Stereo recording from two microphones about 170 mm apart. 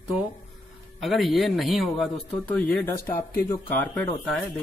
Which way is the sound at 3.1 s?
55° left (ahead or behind).